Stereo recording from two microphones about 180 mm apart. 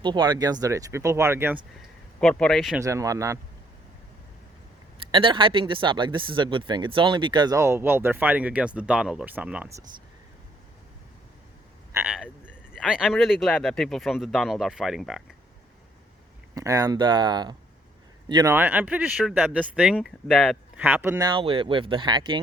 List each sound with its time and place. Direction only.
0.0 s speech: 25° right (ahead or behind)
2.2 s speech: 5° left (ahead or behind)
2.8 s speech: 20° right (ahead or behind)
5.1 s speech: 30° right (ahead or behind); by 9.8 s 10° right (ahead or behind)
11.9 s speech: 5° right (ahead or behind)
16.6 s speech: 20° right (ahead or behind)
18.5 s speech: 10° right (ahead or behind)
20.7 s speech: 10° right (ahead or behind)
21.2 s speech: 30° right (ahead or behind)